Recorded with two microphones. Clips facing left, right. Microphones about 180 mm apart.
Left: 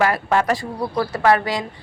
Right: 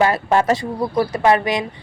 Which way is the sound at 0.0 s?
25° right (ahead or behind).